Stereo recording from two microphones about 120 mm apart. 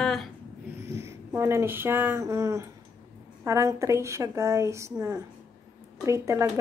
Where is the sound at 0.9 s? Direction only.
20° right (ahead or behind).